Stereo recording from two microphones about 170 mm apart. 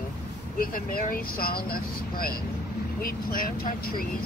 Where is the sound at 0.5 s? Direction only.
60° left (ahead or behind).